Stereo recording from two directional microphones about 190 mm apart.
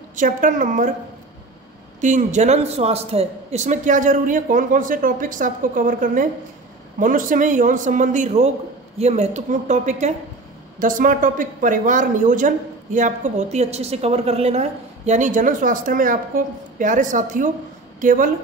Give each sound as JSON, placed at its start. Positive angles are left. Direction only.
{"t": 0.1, "sound": "speech", "side_deg": -45}
{"t": 2.0, "sound": "a woman's voice", "side_deg": -40}